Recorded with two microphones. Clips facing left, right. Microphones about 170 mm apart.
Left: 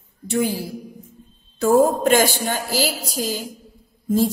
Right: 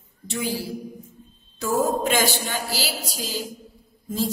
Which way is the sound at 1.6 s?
50° left (ahead or behind).